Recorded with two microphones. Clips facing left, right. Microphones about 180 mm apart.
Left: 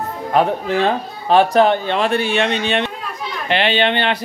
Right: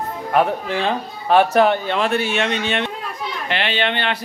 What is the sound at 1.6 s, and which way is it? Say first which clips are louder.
Speech: left 2 dB; 20° left (ahead or behind).